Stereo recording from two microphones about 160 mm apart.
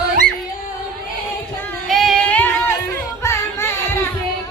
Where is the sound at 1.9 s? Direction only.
Centre (ahead or behind).